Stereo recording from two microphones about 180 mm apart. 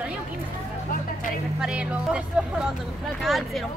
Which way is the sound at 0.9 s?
50° left (ahead or behind).